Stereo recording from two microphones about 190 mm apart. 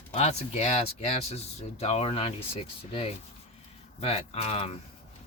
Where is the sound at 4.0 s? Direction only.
30° left (ahead or behind).